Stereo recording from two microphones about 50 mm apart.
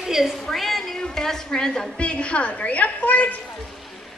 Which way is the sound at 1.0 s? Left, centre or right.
Centre.